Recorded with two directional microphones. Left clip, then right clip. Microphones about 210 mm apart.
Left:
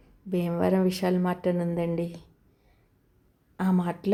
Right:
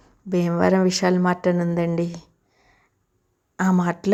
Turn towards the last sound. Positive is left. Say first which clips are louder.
# right 7 dB
turn(degrees=-15)  # may be behind; listen again after turning